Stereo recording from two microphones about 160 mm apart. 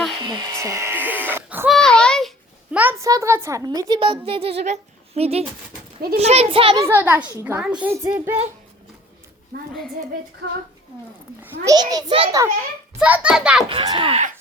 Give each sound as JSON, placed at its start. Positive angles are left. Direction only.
{"t": 0.2, "sound": "a sound", "side_deg": -25}
{"t": 1.6, "sound": "a sound", "side_deg": 0}
{"t": 2.7, "sound": "a sound", "side_deg": -10}
{"t": 3.1, "sound": "speech", "side_deg": -20}
{"t": 6.7, "sound": "a child's voice", "side_deg": -15}
{"t": 9.5, "sound": "a woman's voice", "side_deg": -80}
{"t": 11.6, "sound": "a child's voice", "side_deg": -25}
{"t": 13.0, "sound": "a child's voice", "side_deg": -10}
{"t": 13.7, "sound": "speech", "side_deg": -30}